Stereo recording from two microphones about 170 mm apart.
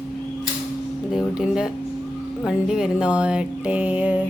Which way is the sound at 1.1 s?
5° right (ahead or behind).